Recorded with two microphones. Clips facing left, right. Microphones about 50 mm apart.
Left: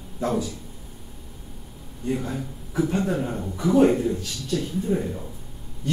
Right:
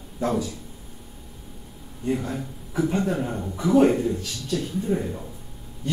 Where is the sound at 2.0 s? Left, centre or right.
Centre.